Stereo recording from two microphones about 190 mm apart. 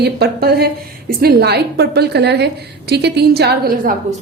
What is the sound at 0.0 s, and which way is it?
A woman's voice, 55° right (ahead or behind).